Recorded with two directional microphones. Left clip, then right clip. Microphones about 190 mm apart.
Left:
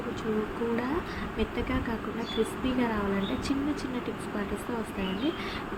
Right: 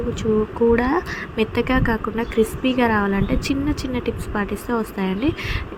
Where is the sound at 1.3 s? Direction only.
40° right (ahead or behind).